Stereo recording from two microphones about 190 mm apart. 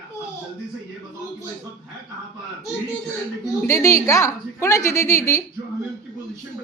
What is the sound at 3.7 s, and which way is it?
A woman's voice, 15° left (ahead or behind).